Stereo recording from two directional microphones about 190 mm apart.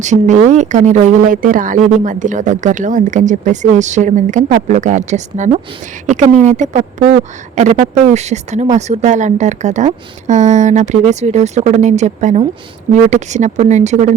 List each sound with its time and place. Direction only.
0.0 s speech: 40° right (ahead or behind)